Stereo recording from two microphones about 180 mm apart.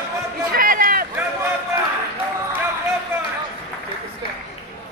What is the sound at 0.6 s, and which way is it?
Run, 50° right (ahead or behind).